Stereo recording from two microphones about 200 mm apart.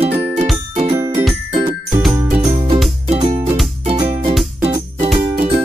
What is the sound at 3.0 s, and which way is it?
Music, 30° right (ahead or behind).